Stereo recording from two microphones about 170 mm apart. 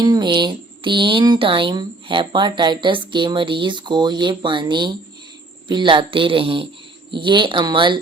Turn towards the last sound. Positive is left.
turn(degrees=-30)  # may be behind; listen again after turning